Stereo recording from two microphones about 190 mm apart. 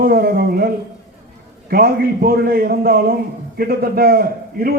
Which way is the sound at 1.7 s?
50° right (ahead or behind).